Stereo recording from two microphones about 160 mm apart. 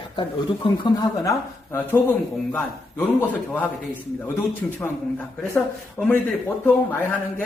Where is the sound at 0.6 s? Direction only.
25° left (ahead or behind).